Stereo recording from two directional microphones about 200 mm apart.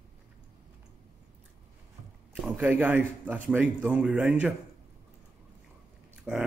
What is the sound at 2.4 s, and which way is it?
Speech, 5° right (ahead or behind).